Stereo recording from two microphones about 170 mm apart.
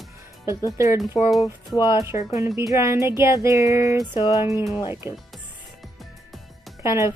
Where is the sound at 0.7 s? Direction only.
15° right (ahead or behind).